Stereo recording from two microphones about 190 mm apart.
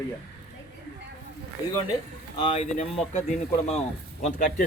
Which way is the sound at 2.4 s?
30° left (ahead or behind).